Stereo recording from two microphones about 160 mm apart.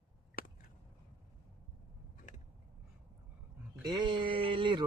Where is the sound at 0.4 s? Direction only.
70° left (ahead or behind).